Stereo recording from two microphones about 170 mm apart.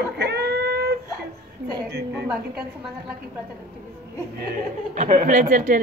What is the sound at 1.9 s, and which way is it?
Speech, 70° right (ahead or behind).